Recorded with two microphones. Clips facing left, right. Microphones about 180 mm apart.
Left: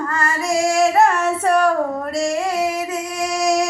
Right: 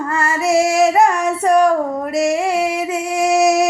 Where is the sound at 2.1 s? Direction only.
20° right (ahead or behind).